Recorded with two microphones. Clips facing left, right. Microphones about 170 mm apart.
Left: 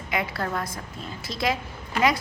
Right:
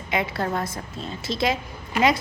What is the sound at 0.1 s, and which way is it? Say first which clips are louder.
A woman's voice: right 3 dB; 25° right (ahead or behind).